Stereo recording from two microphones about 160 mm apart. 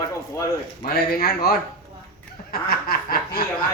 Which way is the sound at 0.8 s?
70° left (ahead or behind).